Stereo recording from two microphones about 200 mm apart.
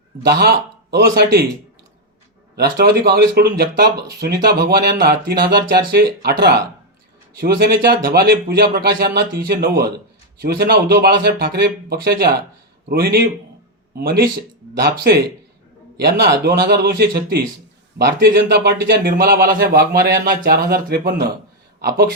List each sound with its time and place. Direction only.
0.3 s a man's voice: 50° right (ahead or behind)
2.7 s a man's voice: 50° right (ahead or behind)